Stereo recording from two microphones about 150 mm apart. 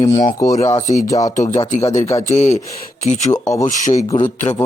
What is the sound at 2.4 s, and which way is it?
Speech, 50° left (ahead or behind).